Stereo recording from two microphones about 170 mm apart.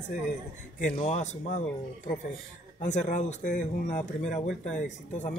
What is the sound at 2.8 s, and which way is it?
A man's voice, 45° left (ahead or behind).